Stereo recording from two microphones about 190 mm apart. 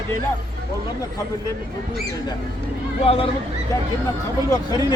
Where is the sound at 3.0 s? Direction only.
30° left (ahead or behind).